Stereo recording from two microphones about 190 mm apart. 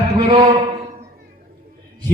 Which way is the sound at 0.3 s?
30° right (ahead or behind).